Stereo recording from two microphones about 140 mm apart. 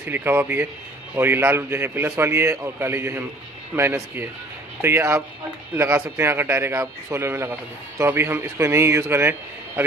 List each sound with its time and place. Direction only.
0.0 s a man's voice: 15° right (ahead or behind)